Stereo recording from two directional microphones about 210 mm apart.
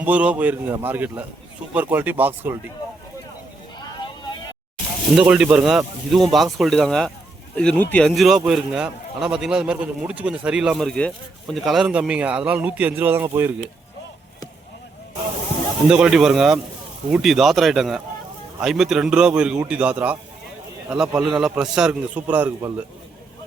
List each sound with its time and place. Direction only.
0.0 s a man's voice: 5° right (ahead or behind)
3.8 s vehicle: 20° left (ahead or behind)
5.1 s a man's voice: 5° right (ahead or behind)
15.9 s a man's voice: 5° right (ahead or behind)
21.2 s a man's voice: 5° right (ahead or behind)